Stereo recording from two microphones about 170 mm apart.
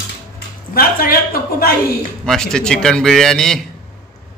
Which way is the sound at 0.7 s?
60° left (ahead or behind).